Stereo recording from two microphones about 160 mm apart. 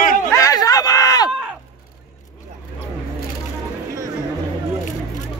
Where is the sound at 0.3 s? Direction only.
20° left (ahead or behind).